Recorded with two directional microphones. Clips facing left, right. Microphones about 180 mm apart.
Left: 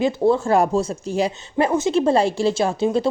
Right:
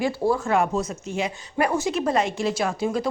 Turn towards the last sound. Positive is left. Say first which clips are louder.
# left 5 dB
turn(degrees=30)  # may be behind; listen again after turning